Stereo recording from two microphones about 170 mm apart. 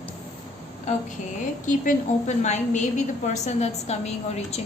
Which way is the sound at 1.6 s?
45° left (ahead or behind).